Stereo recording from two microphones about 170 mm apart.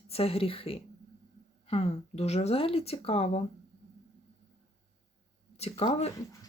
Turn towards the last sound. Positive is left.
turn(degrees=40)  # may be behind; listen again after turning